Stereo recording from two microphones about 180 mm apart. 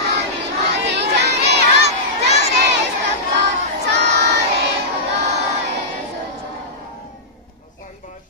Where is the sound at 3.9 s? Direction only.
70° right (ahead or behind).